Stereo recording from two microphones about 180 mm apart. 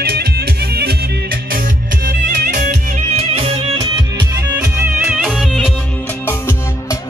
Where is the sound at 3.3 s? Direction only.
30° right (ahead or behind).